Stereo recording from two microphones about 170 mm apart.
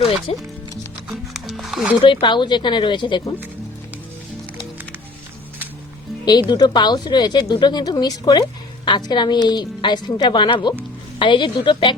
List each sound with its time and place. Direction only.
0.3 s speech: 35° left (ahead or behind)
1.1 s music: centre (ahead or behind)
2.2 s speech: 25° left (ahead or behind)
6.5 s speech: 25° left (ahead or behind)